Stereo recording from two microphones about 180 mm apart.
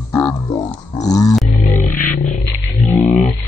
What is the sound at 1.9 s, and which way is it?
Music, 45° left (ahead or behind).